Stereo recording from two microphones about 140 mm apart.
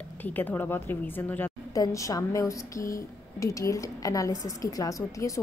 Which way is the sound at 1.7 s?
25° left (ahead or behind).